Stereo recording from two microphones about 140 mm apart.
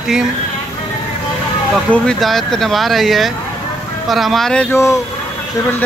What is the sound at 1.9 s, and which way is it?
Speech, 5° left (ahead or behind).